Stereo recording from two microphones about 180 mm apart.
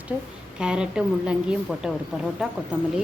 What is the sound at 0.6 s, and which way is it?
A woman's voice, 5° right (ahead or behind).